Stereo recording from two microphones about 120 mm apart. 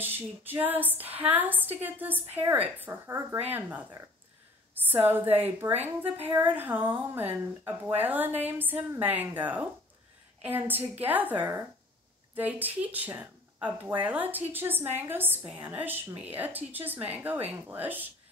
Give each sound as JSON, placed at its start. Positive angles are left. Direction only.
{"t": 0.0, "sound": "speech", "side_deg": -15}
{"t": 4.9, "sound": "speech", "side_deg": -20}